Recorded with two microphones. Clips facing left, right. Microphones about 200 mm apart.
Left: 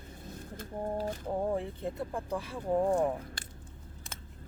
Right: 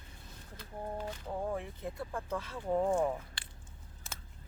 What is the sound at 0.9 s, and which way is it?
Speech, 35° left (ahead or behind).